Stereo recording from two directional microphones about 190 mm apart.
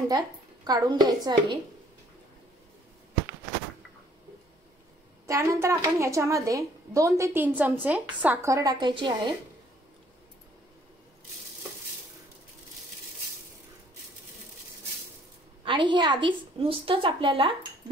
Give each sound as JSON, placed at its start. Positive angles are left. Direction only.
{"t": 0.7, "sound": "a woman's voice", "side_deg": -20}
{"t": 5.2, "sound": "a woman's voice", "side_deg": -15}
{"t": 15.6, "sound": "a woman's voice", "side_deg": -25}